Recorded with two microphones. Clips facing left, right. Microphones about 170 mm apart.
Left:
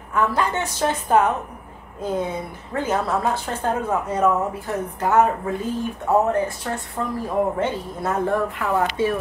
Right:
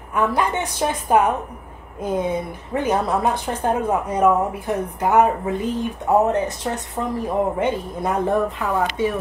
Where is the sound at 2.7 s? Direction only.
15° right (ahead or behind).